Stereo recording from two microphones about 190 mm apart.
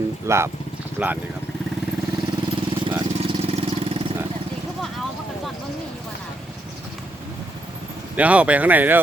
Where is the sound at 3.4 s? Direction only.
30° right (ahead or behind).